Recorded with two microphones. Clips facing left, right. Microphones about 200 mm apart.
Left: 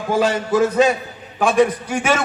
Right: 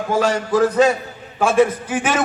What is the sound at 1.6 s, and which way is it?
Speech, 5° right (ahead or behind).